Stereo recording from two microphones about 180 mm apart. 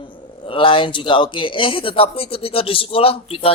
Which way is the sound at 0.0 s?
30° left (ahead or behind).